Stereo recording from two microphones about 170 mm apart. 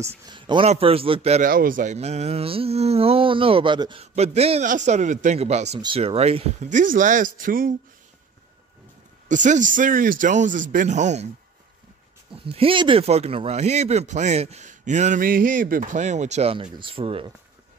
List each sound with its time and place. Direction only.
0.0 s speech: 25° right (ahead or behind)
1.4 s speech: 55° right (ahead or behind)
9.3 s speech: 50° right (ahead or behind)
12.4 s speech: 35° right (ahead or behind)